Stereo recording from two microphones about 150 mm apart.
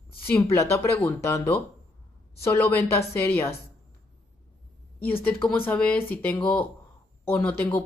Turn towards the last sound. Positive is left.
turn(degrees=15)  # may be behind; listen again after turning